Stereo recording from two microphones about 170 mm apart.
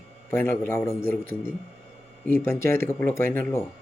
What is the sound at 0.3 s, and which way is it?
Speech, 15° left (ahead or behind).